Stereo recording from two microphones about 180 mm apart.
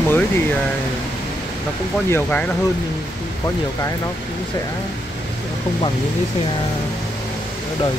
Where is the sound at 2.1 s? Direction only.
10° left (ahead or behind).